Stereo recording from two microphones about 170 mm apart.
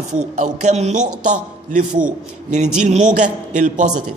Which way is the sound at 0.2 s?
45° right (ahead or behind).